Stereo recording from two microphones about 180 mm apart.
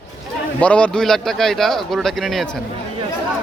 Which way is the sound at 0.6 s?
5° left (ahead or behind).